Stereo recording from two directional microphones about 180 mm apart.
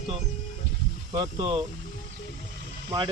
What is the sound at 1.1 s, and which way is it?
Speech, 25° right (ahead or behind).